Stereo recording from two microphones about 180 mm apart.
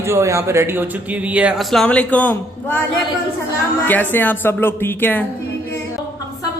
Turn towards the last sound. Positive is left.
turn(degrees=10)  # may be behind; listen again after turning